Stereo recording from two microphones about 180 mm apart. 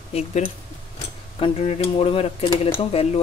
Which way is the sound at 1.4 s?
35° left (ahead or behind).